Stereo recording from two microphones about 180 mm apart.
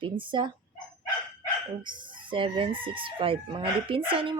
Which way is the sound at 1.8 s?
25° right (ahead or behind).